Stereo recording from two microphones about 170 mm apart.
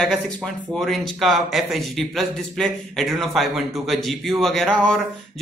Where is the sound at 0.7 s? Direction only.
Centre (ahead or behind).